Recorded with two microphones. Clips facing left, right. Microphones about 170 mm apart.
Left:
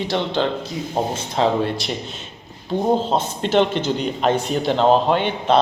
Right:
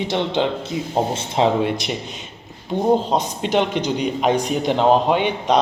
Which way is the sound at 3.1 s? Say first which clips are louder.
Left 1 dB; 10° right (ahead or behind).